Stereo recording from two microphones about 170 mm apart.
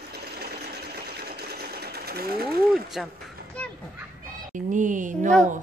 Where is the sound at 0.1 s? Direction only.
70° right (ahead or behind).